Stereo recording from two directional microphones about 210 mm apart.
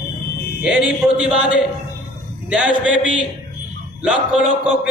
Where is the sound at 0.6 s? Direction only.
5° right (ahead or behind).